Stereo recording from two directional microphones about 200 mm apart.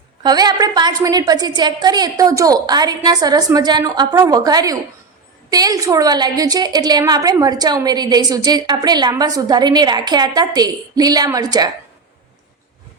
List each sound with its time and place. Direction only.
0.2 s a woman's voice: 20° right (ahead or behind)